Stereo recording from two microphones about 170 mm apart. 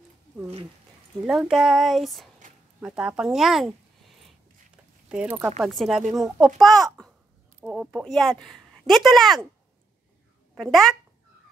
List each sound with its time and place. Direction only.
1.2 s speech: centre (ahead or behind)
2.4 s zipper: 50° right (ahead or behind)
2.8 s speech: 5° right (ahead or behind)
5.1 s a child's voice: 5° right (ahead or behind)
10.5 s speech: centre (ahead or behind)